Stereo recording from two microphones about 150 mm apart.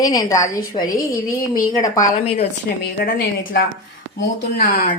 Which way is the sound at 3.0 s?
90° left.